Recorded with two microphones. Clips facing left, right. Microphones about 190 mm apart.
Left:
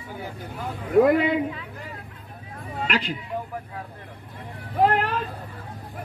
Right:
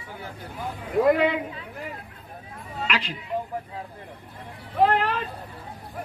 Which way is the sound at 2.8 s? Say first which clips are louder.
Left 2 dB; 45° left (ahead or behind).